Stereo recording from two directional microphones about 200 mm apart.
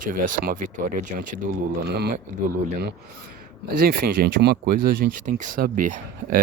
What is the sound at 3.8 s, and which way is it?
Speech, 50° right (ahead or behind).